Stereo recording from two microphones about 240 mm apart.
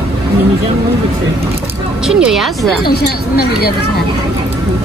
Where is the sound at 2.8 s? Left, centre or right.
Left.